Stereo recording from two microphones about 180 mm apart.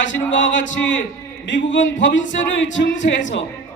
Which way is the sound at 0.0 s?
90° left.